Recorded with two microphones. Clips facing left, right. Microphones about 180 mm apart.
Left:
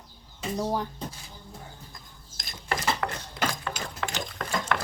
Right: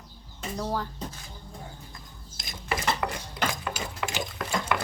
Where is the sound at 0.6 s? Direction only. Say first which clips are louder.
Left 2 dB; 15° left (ahead or behind).